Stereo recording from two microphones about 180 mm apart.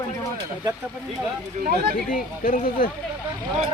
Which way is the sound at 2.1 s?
50° left (ahead or behind).